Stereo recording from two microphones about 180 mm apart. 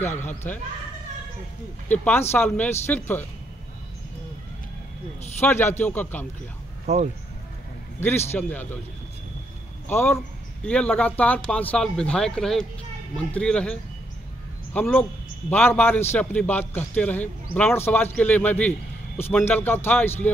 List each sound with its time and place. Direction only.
0.5 s a man's voice: 10° left (ahead or behind)
1.9 s a man's voice: 10° left (ahead or behind)
5.4 s a man's voice: 10° left (ahead or behind)
6.9 s speech: 40° right (ahead or behind)
8.4 s a man's voice: 10° left (ahead or behind)
9.8 s a man's voice: 10° left (ahead or behind)